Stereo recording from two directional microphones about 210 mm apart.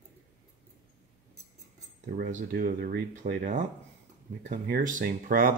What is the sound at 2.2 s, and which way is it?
Speech, 40° right (ahead or behind).